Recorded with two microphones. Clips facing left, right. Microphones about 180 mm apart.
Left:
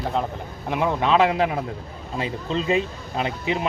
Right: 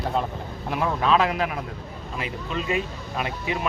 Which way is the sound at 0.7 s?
20° left (ahead or behind).